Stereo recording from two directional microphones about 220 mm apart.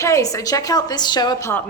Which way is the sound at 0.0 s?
15° left (ahead or behind).